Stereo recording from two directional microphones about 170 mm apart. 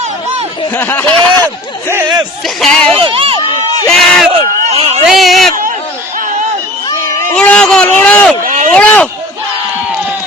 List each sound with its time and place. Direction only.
0.7 s speech: 15° left (ahead or behind)
1.9 s speech: 20° right (ahead or behind)
2.6 s speech: centre (ahead or behind)
2.9 s crowd: 35° right (ahead or behind)
3.8 s speech: 5° left (ahead or behind)
4.3 s a sound: 35° right (ahead or behind)
5.0 s speech: centre (ahead or behind)
7.3 s a sound: 5° left (ahead or behind)